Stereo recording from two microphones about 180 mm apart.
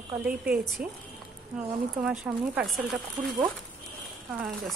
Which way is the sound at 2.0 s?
5° right (ahead or behind).